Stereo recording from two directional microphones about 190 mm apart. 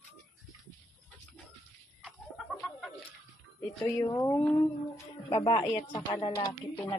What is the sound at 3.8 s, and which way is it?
Speech, 20° left (ahead or behind).